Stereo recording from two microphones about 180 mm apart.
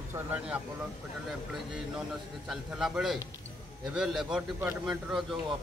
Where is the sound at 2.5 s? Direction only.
Centre (ahead or behind).